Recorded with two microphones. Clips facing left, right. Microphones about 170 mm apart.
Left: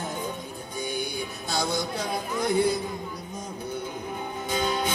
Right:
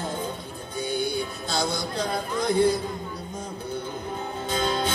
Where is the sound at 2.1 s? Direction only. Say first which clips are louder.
Right 1 dB; 10° left (ahead or behind).